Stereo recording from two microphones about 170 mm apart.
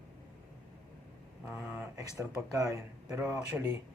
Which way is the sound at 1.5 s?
10° right (ahead or behind).